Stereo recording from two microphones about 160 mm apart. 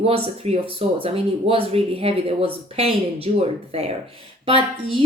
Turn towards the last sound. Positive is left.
turn(degrees=-35)  # may be behind; listen again after turning